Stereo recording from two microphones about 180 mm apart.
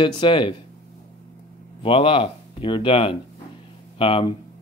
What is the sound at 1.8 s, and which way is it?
Speech, 30° left (ahead or behind).